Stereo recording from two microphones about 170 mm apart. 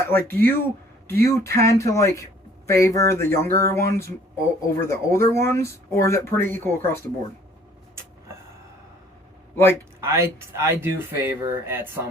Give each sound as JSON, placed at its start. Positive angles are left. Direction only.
{"t": 0.1, "sound": "speech", "side_deg": 10}
{"t": 10.0, "sound": "speech", "side_deg": -15}